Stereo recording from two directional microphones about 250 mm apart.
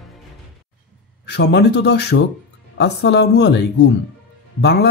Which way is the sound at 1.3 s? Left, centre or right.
Left.